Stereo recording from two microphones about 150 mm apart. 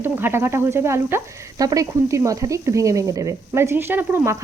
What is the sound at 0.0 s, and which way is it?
Frying, 15° right (ahead or behind).